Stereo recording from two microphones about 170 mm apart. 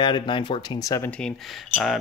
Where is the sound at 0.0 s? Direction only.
30° left (ahead or behind).